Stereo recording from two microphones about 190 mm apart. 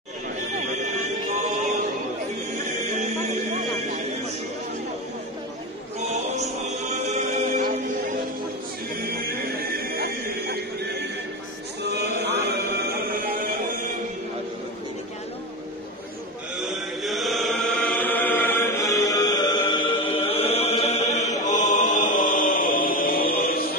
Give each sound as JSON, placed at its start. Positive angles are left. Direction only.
{"t": 0.6, "sound": "music", "side_deg": -40}
{"t": 6.9, "sound": "music", "side_deg": -35}
{"t": 9.4, "sound": "music", "side_deg": -55}
{"t": 12.2, "sound": "a sound", "side_deg": -55}
{"t": 17.0, "sound": "chant", "side_deg": 0}
{"t": 19.0, "sound": "music", "side_deg": 20}